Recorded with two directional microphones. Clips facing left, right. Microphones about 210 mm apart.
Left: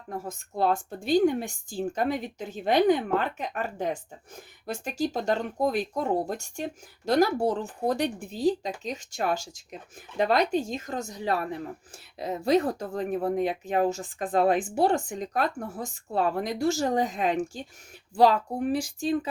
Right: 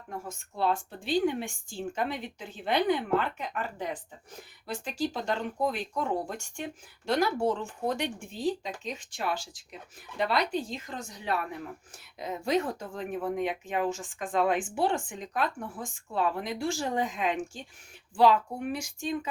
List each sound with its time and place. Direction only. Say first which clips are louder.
0.1 s a woman's voice: left 5 dB; 40° left (ahead or behind)